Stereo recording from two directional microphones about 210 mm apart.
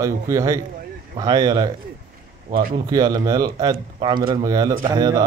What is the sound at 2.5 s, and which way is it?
Speech, 40° right (ahead or behind).